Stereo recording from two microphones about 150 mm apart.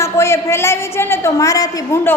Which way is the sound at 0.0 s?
20° left (ahead or behind).